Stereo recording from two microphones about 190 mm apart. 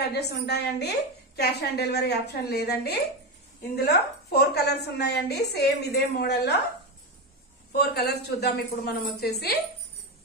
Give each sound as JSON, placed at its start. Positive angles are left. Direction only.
{"t": 0.1, "sound": "a woman's voice", "side_deg": 60}
{"t": 7.7, "sound": "a woman's voice", "side_deg": 60}